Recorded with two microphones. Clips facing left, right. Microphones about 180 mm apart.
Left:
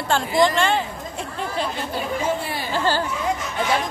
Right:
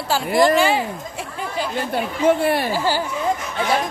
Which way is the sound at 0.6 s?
5° right (ahead or behind).